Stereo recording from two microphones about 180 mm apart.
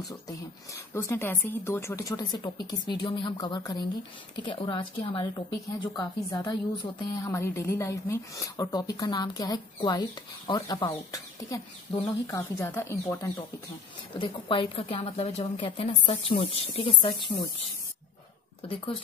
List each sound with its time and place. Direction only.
0.9 s a woman's voice: 15° left (ahead or behind)
7.3 s a woman's voice: 15° left (ahead or behind)
14.1 s a woman's voice: 30° left (ahead or behind)